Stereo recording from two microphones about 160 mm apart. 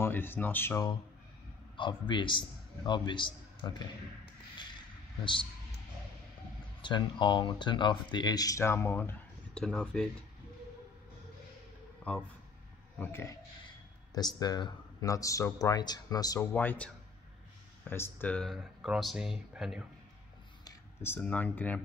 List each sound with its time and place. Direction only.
0.0 s speech: 15° left (ahead or behind)
1.8 s speech: 30° left (ahead or behind)
5.2 s a man's voice: 30° left (ahead or behind)
6.8 s speech: 30° left (ahead or behind)
9.5 s speech: 5° left (ahead or behind)
12.0 s a man's voice: 10° left (ahead or behind)
14.1 s speech: 25° left (ahead or behind)
16.5 s speech: 10° left (ahead or behind)
20.6 s speech: 15° left (ahead or behind)